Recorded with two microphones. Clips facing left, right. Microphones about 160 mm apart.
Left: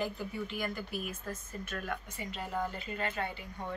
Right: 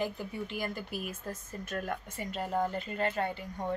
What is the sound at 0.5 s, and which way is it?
Speech, 30° right (ahead or behind).